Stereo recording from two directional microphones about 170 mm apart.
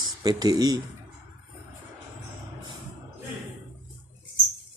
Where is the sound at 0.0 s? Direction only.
25° right (ahead or behind).